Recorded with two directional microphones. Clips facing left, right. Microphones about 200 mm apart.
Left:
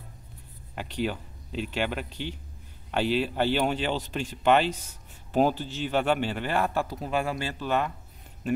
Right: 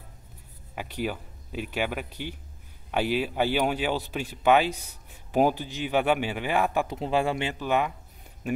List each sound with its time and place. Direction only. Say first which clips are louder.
0.7 s speech: left 1 dB; 10° right (ahead or behind)
7.0 s speech: right 3 dB; 25° right (ahead or behind)